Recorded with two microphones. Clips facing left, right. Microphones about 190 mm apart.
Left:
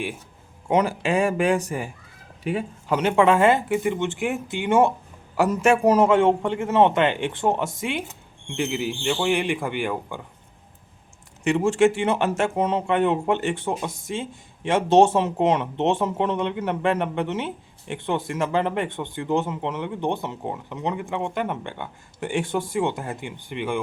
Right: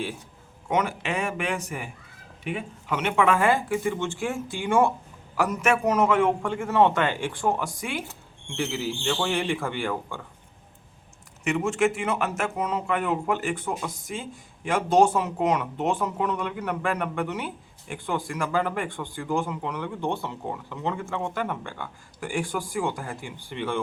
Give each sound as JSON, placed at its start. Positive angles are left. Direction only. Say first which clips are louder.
{"t": 0.7, "sound": "speech", "louder": "left 5 dB", "side_deg": 30}
{"t": 11.4, "sound": "speech", "louder": "left 5 dB", "side_deg": 30}